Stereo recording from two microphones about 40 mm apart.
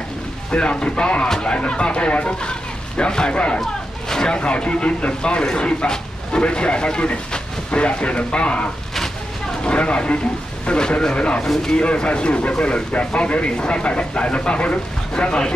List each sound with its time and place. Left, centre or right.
0.5 s speech: left
4.1 s a sound: centre
4.4 s speech: left
9.7 s speech: left